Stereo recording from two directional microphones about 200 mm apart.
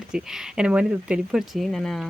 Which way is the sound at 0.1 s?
5° right (ahead or behind).